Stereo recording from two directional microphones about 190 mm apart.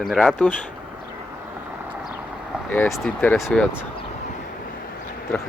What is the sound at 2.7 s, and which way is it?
Speech, 5° left (ahead or behind).